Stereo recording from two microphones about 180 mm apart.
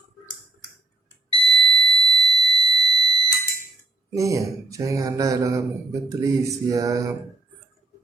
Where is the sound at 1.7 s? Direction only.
25° right (ahead or behind).